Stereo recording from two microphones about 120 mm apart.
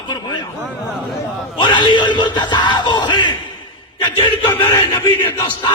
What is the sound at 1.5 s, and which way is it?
Yell, 40° left (ahead or behind).